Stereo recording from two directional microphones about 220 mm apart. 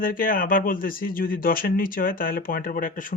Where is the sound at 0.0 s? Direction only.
40° left (ahead or behind).